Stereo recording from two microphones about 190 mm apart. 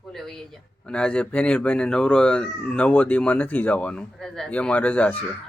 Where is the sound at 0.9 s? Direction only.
5° left (ahead or behind).